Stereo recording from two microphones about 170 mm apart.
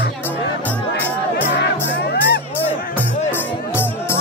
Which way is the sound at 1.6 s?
90° left.